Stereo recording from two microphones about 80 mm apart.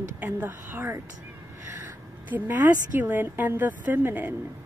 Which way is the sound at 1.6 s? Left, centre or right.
Right.